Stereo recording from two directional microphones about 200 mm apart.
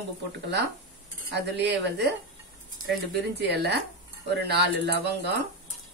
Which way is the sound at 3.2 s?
55° right (ahead or behind).